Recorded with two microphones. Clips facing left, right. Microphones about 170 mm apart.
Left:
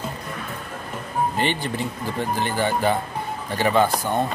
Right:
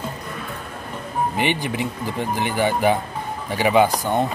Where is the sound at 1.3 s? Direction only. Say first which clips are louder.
Right 2 dB; 15° right (ahead or behind).